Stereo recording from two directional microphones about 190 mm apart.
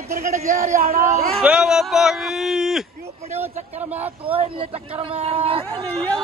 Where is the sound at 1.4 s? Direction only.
5° right (ahead or behind).